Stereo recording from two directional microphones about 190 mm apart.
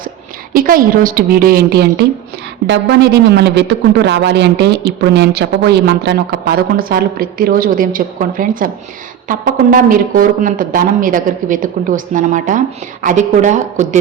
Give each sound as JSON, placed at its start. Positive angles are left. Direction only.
{"t": 0.5, "sound": "speech", "side_deg": -50}